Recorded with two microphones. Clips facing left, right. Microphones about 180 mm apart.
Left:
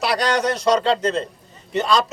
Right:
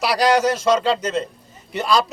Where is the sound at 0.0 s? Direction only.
Centre (ahead or behind).